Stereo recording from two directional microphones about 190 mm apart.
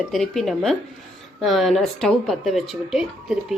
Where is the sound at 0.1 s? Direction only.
Centre (ahead or behind).